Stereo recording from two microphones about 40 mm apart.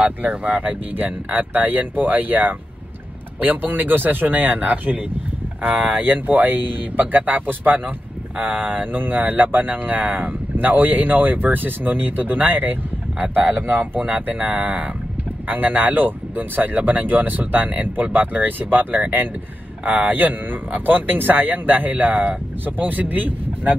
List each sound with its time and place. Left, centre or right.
0.0 s speech: right
0.9 s speech: right
19.8 s a man's voice: right
20.1 s speech: right